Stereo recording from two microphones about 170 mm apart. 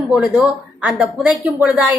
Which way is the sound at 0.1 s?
5° right (ahead or behind).